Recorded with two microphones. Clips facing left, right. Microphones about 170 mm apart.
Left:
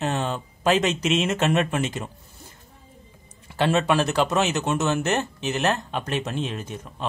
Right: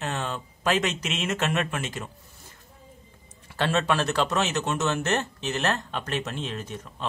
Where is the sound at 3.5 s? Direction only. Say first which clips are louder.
Left 4 dB; 15° left (ahead or behind).